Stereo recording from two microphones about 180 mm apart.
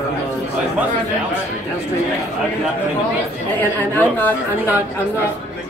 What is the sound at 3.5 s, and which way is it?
Speech, 10° left (ahead or behind).